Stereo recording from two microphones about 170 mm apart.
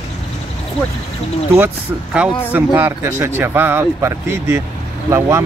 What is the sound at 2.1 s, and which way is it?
Speech, 10° right (ahead or behind).